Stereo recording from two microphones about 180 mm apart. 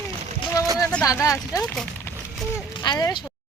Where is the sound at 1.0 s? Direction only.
20° left (ahead or behind).